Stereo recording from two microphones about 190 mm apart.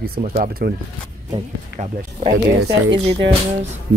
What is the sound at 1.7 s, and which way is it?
Speech, 50° left (ahead or behind).